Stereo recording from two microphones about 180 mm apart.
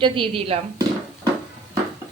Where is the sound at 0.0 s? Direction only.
30° right (ahead or behind).